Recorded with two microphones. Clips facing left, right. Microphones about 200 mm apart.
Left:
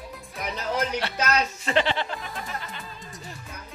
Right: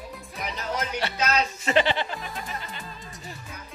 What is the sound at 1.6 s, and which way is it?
Speech, centre (ahead or behind).